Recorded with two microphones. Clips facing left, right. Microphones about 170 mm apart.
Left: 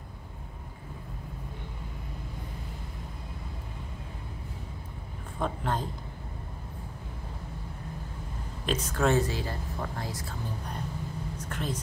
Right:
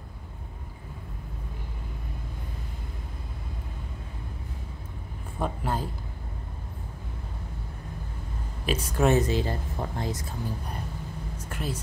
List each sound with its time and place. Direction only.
5.4 s a man's voice: 5° right (ahead or behind)
8.6 s speech: 10° right (ahead or behind)
11.3 s a sound: 10° right (ahead or behind)